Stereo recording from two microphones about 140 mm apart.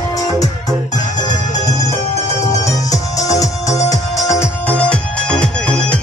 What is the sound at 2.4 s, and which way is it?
Music, 25° left (ahead or behind).